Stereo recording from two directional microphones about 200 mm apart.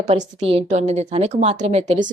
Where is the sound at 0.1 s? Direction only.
30° right (ahead or behind).